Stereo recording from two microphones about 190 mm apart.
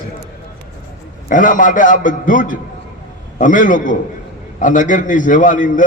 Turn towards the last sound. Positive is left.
turn(degrees=45)  # may be behind; listen again after turning